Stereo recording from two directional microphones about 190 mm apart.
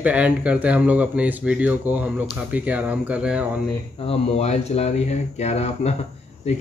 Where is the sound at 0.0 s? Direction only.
5° right (ahead or behind).